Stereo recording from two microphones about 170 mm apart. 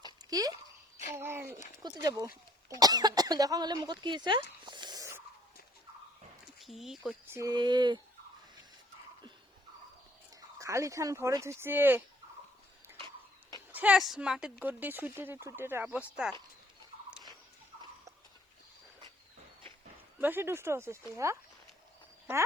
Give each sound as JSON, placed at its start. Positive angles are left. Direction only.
{"t": 0.3, "sound": "speech", "side_deg": -20}
{"t": 0.5, "sound": "a sound", "side_deg": 40}
{"t": 1.1, "sound": "speech", "side_deg": -15}
{"t": 4.6, "sound": "a sound", "side_deg": -25}
{"t": 6.4, "sound": "speech", "side_deg": 0}
{"t": 7.3, "sound": "speech", "side_deg": -15}
{"t": 10.6, "sound": "speech", "side_deg": -20}
{"t": 13.7, "sound": "a woman's voice", "side_deg": -5}
{"t": 17.1, "sound": "rodents", "side_deg": -5}
{"t": 20.2, "sound": "speech", "side_deg": -10}